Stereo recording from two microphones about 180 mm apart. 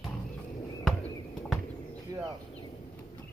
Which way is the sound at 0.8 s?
Centre (ahead or behind).